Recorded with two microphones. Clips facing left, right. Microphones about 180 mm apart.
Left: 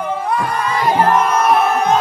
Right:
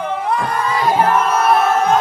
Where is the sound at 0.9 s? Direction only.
15° left (ahead or behind).